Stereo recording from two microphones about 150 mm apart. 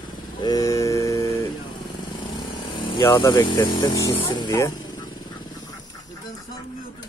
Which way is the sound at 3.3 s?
30° left (ahead or behind).